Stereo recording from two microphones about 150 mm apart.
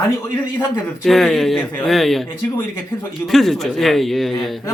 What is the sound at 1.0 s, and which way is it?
Speech, centre (ahead or behind).